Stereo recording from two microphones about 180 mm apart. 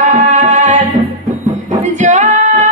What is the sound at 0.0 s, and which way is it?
Tabla, 40° right (ahead or behind).